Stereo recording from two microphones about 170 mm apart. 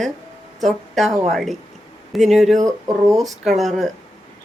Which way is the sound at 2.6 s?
20° right (ahead or behind).